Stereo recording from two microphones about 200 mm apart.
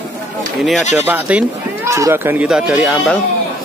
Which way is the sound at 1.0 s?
10° right (ahead or behind).